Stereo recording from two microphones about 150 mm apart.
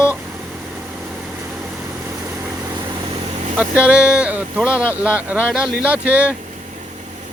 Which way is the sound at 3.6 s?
10° right (ahead or behind).